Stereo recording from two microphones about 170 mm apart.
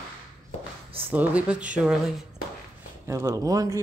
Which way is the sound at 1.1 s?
10° right (ahead or behind).